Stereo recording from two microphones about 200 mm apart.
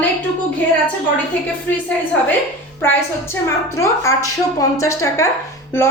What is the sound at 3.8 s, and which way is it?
A woman's voice, 15° left (ahead or behind).